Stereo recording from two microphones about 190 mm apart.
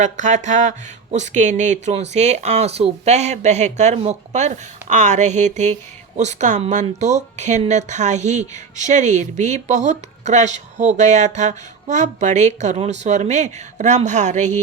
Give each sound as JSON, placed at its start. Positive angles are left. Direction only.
{"t": 0.0, "sound": "speech", "side_deg": -40}